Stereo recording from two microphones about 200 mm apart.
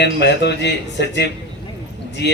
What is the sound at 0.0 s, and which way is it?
A man's voice, 60° left (ahead or behind).